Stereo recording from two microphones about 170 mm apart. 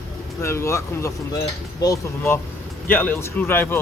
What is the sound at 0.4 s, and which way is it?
Speech, 15° left (ahead or behind).